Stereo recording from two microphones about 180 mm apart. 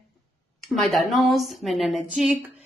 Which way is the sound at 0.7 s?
Centre (ahead or behind).